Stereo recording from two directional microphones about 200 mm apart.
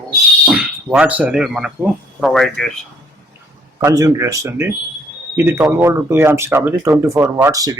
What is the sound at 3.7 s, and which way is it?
Speech, 15° right (ahead or behind).